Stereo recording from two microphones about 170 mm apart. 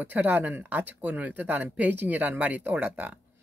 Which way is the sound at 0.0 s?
10° right (ahead or behind).